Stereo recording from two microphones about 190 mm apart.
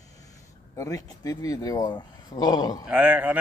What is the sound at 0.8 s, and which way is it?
Speech, 20° left (ahead or behind).